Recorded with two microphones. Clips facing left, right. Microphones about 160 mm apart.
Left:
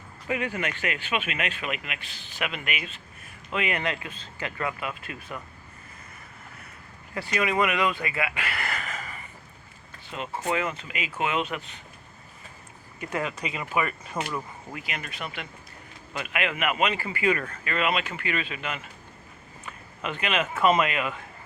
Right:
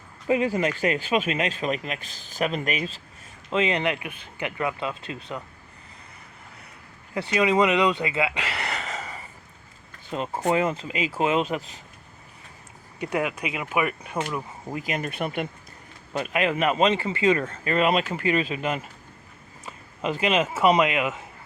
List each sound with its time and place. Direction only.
0.3 s speech: 30° right (ahead or behind)
3.5 s speech: 20° right (ahead or behind)
7.1 s speech: 20° right (ahead or behind)
10.1 s speech: 40° right (ahead or behind)
13.0 s speech: 10° right (ahead or behind)
14.8 s speech: 40° right (ahead or behind)
16.1 s speech: 35° right (ahead or behind)
20.0 s speech: 25° right (ahead or behind)